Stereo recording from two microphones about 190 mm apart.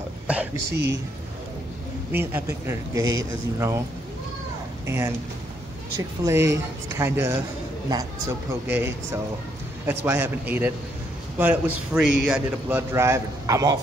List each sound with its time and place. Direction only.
0.3 s a sound: 5° right (ahead or behind)
2.1 s a man's voice: 10° right (ahead or behind)
4.8 s speech: 15° right (ahead or behind)
6.2 s a man's voice: 15° right (ahead or behind)